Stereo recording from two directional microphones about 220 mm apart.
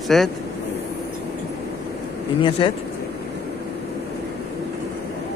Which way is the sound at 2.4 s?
20° left (ahead or behind).